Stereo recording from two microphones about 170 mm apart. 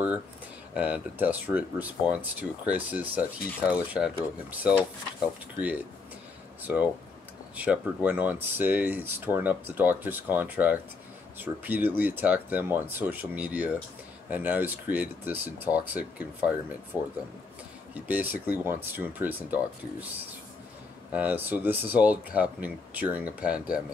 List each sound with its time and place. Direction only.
0.7 s speech: 10° right (ahead or behind)
6.6 s speech: 10° right (ahead or behind)
18.0 s speech: 10° right (ahead or behind)
21.1 s speech: 10° right (ahead or behind)